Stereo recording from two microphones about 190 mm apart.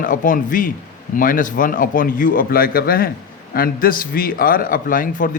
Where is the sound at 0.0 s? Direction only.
45° left (ahead or behind).